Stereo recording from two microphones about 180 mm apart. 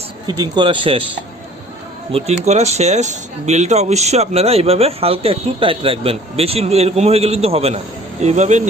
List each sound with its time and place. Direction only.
0.3 s speech: 25° right (ahead or behind)
2.1 s speech: 35° right (ahead or behind)